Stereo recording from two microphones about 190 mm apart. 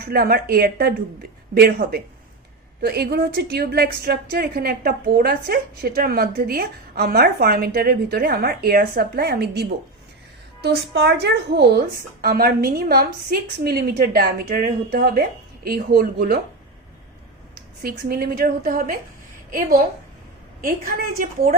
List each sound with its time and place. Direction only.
0.0 s a woman's voice: 55° right (ahead or behind)
17.8 s a woman's voice: 50° right (ahead or behind)